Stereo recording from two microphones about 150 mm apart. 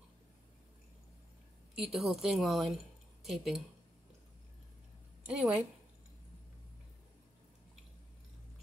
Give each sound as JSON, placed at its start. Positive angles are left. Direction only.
{"t": 1.8, "sound": "speech", "side_deg": 0}
{"t": 5.2, "sound": "a woman's voice", "side_deg": -10}